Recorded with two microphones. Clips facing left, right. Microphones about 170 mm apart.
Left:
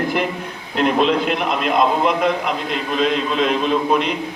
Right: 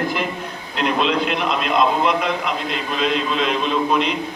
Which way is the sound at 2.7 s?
45° left (ahead or behind).